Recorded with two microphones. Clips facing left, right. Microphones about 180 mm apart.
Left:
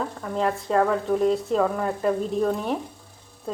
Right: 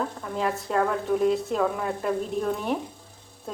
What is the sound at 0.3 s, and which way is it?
Speech, centre (ahead or behind).